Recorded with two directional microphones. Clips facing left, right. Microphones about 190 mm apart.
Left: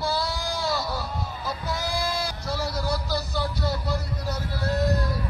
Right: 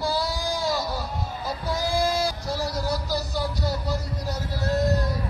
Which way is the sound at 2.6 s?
15° right (ahead or behind).